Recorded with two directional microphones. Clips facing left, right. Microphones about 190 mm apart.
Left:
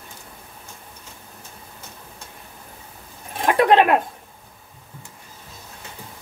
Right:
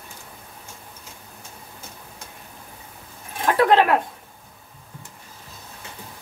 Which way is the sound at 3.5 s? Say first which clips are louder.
Left 1 dB; 15° left (ahead or behind).